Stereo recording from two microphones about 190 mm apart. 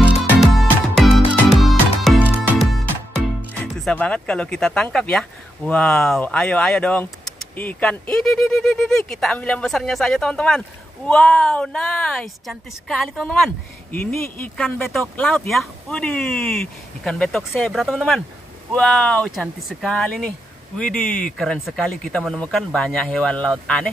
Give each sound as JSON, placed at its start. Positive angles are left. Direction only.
{"t": 0.4, "sound": "music", "side_deg": 0}
{"t": 3.6, "sound": "speech", "side_deg": 5}